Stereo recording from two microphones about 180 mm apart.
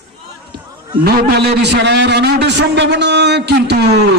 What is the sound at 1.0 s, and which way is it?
A man's voice, 65° right (ahead or behind).